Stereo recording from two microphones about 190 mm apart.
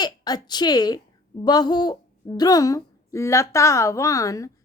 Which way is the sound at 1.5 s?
20° left (ahead or behind).